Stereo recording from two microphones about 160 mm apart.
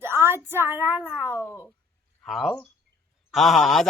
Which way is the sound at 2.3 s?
Centre (ahead or behind).